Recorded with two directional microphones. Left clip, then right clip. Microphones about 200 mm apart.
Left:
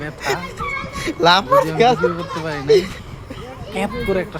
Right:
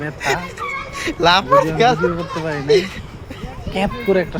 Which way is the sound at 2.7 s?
10° left (ahead or behind).